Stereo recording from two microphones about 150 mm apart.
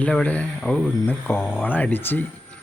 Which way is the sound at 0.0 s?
10° left (ahead or behind).